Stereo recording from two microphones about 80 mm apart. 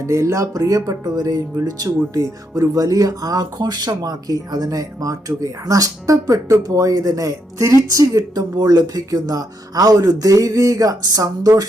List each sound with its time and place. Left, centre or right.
0.0 s speech: right